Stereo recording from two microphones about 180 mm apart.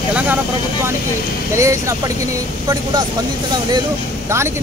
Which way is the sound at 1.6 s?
15° right (ahead or behind).